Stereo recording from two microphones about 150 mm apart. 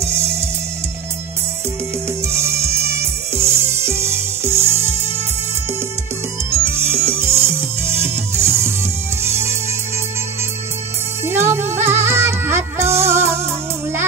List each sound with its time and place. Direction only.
2.2 s music: 20° right (ahead or behind)
6.5 s music: 15° right (ahead or behind)
11.2 s music: 15° right (ahead or behind)